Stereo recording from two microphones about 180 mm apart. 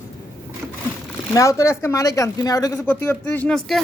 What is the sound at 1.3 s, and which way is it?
Speech, 15° left (ahead or behind).